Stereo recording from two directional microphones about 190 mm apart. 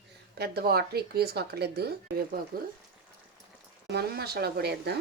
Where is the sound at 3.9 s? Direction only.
55° right (ahead or behind).